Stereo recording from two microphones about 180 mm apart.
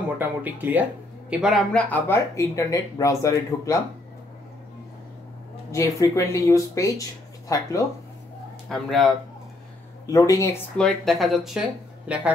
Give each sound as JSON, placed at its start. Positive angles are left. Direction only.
{"t": 0.2, "sound": "speech", "side_deg": -10}
{"t": 1.4, "sound": "speech", "side_deg": 0}
{"t": 5.7, "sound": "speech", "side_deg": 15}
{"t": 8.6, "sound": "speech", "side_deg": 0}
{"t": 10.0, "sound": "speech", "side_deg": 20}
{"t": 10.8, "sound": "speech", "side_deg": 0}